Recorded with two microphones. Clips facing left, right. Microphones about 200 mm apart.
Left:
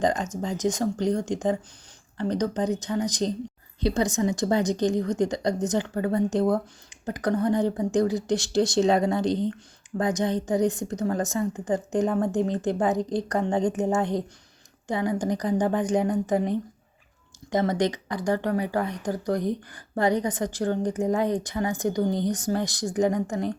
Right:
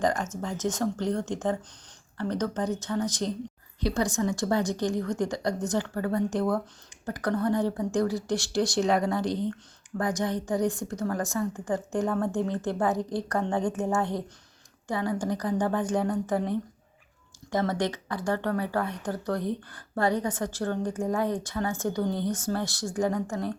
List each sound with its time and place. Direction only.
0.0 s a woman's voice: 20° left (ahead or behind)